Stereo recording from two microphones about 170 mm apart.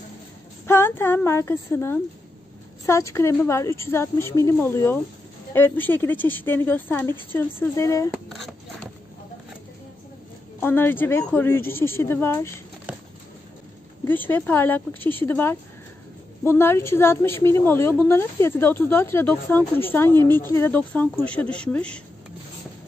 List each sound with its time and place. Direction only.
0.7 s a woman's voice: 15° left (ahead or behind)
10.6 s a woman's voice: 10° left (ahead or behind)
14.0 s a woman's voice: 10° left (ahead or behind)